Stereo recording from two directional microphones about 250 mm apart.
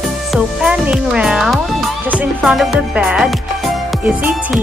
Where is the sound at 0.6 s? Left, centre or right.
Centre.